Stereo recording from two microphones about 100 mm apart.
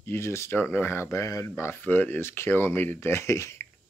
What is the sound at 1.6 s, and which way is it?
Speech, 20° left (ahead or behind).